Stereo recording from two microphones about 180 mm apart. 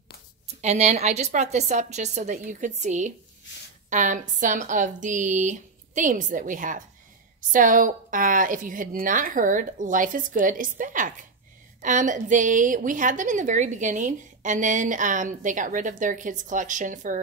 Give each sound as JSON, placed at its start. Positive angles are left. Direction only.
{"t": 0.6, "sound": "a woman's voice", "side_deg": -40}